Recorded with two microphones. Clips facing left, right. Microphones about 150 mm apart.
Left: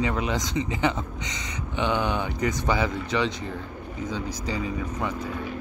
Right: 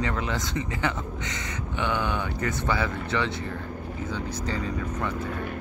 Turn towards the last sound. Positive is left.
turn(degrees=10)  # may be behind; listen again after turning